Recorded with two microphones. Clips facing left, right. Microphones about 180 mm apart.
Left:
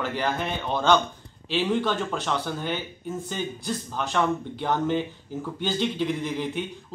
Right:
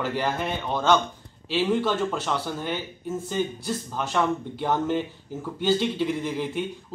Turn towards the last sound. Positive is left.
turn(degrees=-5)  # may be behind; listen again after turning